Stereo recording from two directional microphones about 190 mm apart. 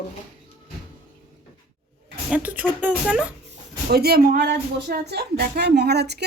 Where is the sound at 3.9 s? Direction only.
55° right (ahead or behind).